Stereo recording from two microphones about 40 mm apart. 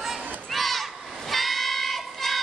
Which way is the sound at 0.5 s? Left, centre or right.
Centre.